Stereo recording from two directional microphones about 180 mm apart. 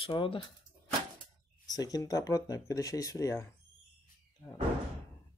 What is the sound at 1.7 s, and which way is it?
Speech, 20° left (ahead or behind).